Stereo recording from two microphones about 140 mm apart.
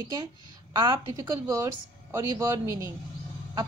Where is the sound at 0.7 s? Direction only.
30° right (ahead or behind).